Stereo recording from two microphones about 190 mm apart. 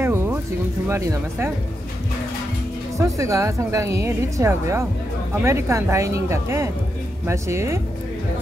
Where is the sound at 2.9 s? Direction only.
15° right (ahead or behind).